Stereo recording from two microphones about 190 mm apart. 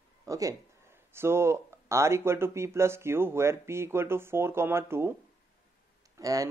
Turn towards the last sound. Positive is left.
turn(degrees=-20)  # may be behind; listen again after turning